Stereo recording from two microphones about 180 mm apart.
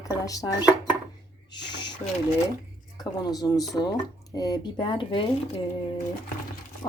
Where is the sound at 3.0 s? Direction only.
20° left (ahead or behind).